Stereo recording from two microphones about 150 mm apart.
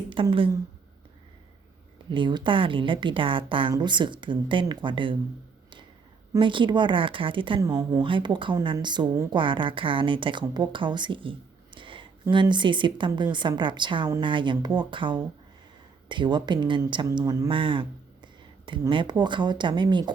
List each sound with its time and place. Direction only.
0.1 s speech: 35° right (ahead or behind)
2.0 s a woman's voice: 30° right (ahead or behind)
6.4 s a woman's voice: 35° right (ahead or behind)
7.6 s a woman's voice: 20° right (ahead or behind)